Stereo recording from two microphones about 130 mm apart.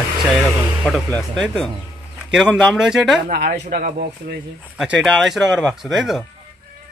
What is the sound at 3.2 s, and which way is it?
Speech, 90° right.